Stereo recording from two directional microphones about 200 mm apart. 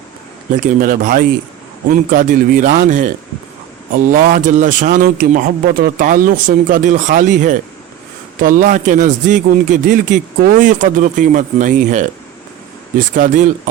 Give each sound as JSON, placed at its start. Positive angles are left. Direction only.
{"t": 0.5, "sound": "a man's voice", "side_deg": -40}
{"t": 13.1, "sound": "a man's voice", "side_deg": -40}